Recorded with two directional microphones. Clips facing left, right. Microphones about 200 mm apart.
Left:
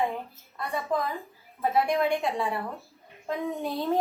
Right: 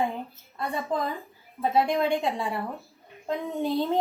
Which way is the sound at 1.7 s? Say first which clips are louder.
Right 1 dB; 25° right (ahead or behind).